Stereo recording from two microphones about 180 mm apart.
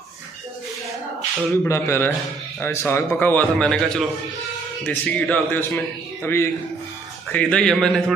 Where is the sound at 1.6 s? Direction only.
15° left (ahead or behind).